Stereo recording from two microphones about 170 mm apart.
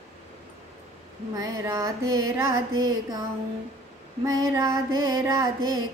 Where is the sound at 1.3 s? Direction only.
20° right (ahead or behind).